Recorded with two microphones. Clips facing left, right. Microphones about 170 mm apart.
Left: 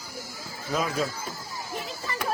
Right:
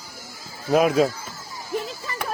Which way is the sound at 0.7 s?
70° right (ahead or behind).